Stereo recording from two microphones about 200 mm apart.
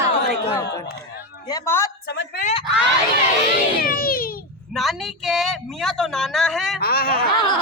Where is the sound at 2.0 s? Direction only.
55° left (ahead or behind).